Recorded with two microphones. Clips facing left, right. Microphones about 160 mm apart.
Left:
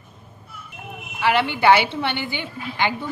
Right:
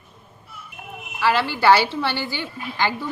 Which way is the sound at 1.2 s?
20° left (ahead or behind).